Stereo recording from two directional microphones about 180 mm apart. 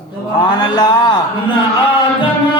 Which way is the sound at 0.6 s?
25° left (ahead or behind).